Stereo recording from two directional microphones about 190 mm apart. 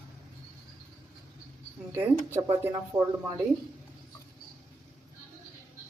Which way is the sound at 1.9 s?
15° right (ahead or behind).